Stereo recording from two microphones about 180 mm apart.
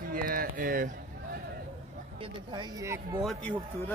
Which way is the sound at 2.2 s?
25° right (ahead or behind).